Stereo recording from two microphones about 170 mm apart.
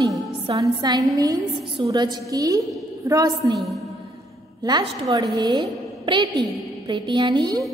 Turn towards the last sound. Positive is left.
turn(degrees=-25)  # may be behind; listen again after turning